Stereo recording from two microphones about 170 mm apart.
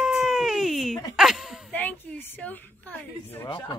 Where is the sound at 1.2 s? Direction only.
Centre (ahead or behind).